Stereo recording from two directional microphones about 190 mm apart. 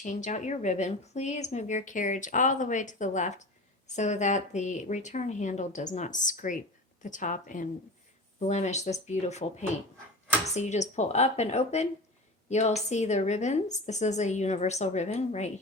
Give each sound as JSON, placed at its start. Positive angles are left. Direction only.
{"t": 0.0, "sound": "a woman's voice", "side_deg": 40}